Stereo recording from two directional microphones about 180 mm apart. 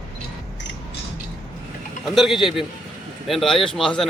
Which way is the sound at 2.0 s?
Centre (ahead or behind).